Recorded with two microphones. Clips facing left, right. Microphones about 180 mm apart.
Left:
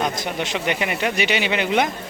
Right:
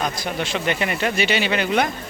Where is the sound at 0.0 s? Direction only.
20° left (ahead or behind).